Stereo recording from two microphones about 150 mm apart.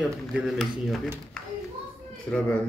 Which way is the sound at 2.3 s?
5° left (ahead or behind).